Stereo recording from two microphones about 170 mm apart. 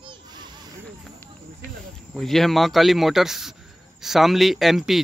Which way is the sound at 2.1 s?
Centre (ahead or behind).